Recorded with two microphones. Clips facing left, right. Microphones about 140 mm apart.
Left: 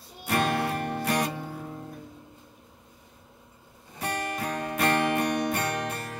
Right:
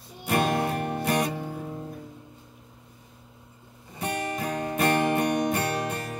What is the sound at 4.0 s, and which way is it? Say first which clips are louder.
Music: right 1 dB; 30° right (ahead or behind).